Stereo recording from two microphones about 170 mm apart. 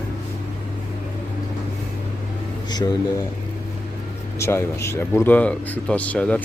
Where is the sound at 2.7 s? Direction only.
25° left (ahead or behind).